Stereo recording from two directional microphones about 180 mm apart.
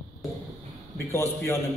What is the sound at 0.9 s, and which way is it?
Speech, 15° left (ahead or behind).